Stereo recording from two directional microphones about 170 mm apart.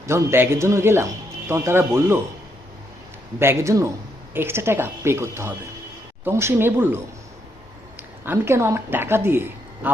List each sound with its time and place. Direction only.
0.1 s speech: 15° right (ahead or behind)
3.3 s speech: 15° right (ahead or behind)
8.2 s speech: 15° right (ahead or behind)